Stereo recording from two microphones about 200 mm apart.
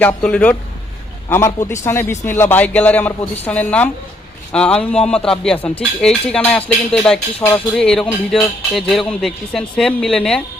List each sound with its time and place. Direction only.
0.0 s a man's voice: 5° left (ahead or behind)